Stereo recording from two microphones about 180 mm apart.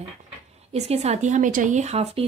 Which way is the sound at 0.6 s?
35° right (ahead or behind).